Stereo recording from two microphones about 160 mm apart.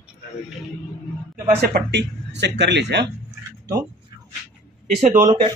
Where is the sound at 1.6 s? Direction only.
90° right.